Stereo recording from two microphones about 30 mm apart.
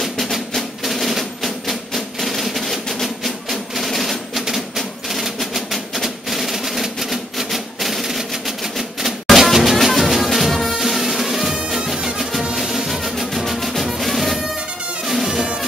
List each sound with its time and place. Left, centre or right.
0.0 s percussion: centre
2.1 s music: centre
4.7 s a sound: centre
9.4 s music: centre